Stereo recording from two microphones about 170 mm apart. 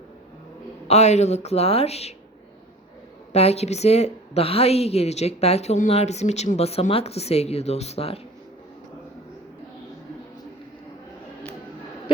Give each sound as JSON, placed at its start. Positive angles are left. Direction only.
{"t": 0.9, "sound": "a woman's voice", "side_deg": 40}
{"t": 3.3, "sound": "a woman's voice", "side_deg": 40}